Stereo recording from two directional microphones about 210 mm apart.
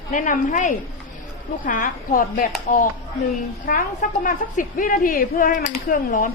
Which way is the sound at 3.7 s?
40° left (ahead or behind).